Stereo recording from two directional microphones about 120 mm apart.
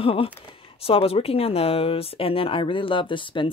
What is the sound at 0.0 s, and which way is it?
Speech, 50° left (ahead or behind).